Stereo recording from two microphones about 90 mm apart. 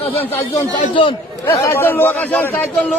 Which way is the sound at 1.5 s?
30° left (ahead or behind).